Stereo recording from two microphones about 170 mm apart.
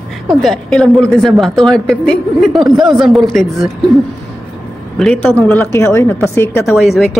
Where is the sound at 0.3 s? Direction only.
Centre (ahead or behind).